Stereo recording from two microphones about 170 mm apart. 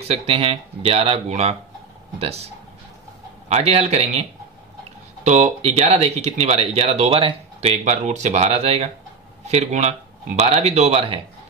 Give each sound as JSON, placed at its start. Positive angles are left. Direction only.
{"t": 0.0, "sound": "speech", "side_deg": -35}